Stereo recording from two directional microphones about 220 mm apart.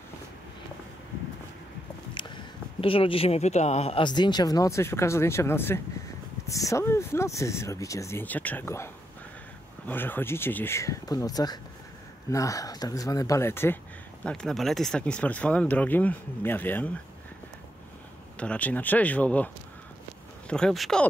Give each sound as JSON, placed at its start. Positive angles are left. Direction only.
{"t": 2.1, "sound": "speech", "side_deg": 20}
{"t": 18.4, "sound": "speech", "side_deg": 5}